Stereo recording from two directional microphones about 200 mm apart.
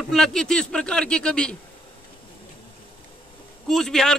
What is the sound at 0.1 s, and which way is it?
A man's voice, centre (ahead or behind).